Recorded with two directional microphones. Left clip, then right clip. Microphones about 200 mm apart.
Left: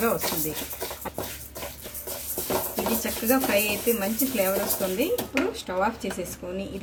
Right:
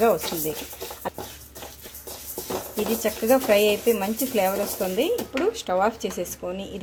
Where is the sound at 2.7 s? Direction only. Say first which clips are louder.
Right 3 dB; centre (ahead or behind).